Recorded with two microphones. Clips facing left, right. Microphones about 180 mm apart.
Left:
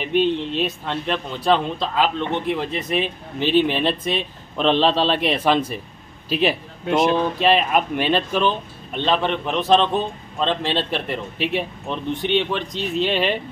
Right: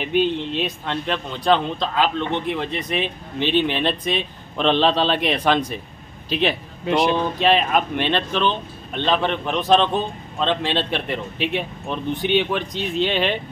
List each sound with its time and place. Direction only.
0.0 s speech: centre (ahead or behind)